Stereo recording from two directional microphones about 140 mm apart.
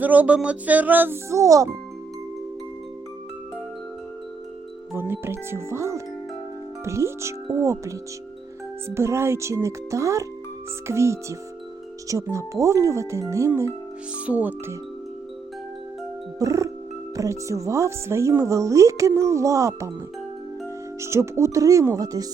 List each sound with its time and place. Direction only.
0.0 s speech: 10° right (ahead or behind)
4.9 s speech: 15° right (ahead or behind)
9.0 s speech: 20° right (ahead or behind)
16.4 s speech: 25° right (ahead or behind)
21.0 s speech: 20° right (ahead or behind)